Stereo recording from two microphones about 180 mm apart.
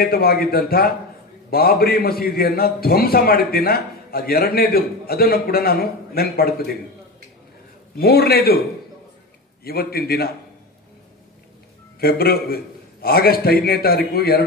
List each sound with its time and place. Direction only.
0.0 s a man's voice: 55° left (ahead or behind)
8.0 s a man's voice: 60° left (ahead or behind)
9.7 s a man's voice: 60° left (ahead or behind)
12.0 s a man's voice: 55° left (ahead or behind)